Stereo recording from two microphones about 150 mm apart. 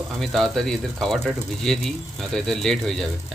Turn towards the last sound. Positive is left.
turn(degrees=0)  # may be behind; listen again after turning